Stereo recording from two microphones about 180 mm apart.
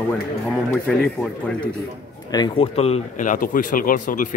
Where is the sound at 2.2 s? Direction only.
20° left (ahead or behind).